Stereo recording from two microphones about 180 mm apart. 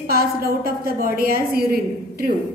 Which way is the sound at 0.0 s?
60° right (ahead or behind).